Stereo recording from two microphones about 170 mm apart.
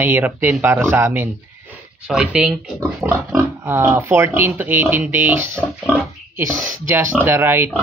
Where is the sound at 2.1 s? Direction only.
Centre (ahead or behind).